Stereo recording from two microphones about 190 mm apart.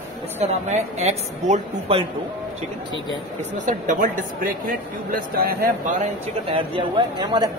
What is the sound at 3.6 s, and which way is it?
Speech, 40° right (ahead or behind).